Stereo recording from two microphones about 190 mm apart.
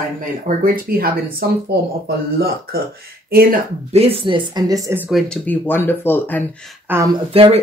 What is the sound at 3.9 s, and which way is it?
Speech, 30° right (ahead or behind).